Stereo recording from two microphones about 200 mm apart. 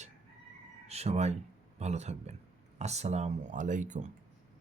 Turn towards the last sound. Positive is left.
turn(degrees=-40)  # may be behind; listen again after turning